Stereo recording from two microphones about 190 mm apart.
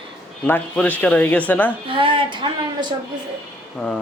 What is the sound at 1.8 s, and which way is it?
Speech, 25° right (ahead or behind).